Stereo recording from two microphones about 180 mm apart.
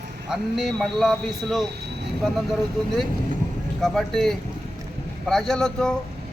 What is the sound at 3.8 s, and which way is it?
A man's voice, centre (ahead or behind).